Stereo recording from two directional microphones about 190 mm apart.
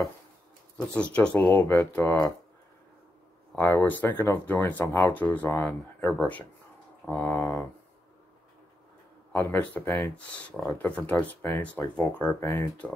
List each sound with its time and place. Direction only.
0.7 s speech: 5° left (ahead or behind)
1.5 s speech: 20° left (ahead or behind)
1.9 s speech: 5° left (ahead or behind)
3.5 s speech: 10° left (ahead or behind)
9.3 s speech: 10° left (ahead or behind)